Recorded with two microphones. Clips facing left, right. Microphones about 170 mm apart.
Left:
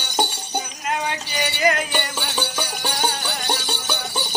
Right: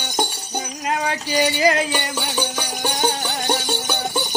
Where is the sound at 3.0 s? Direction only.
45° right (ahead or behind).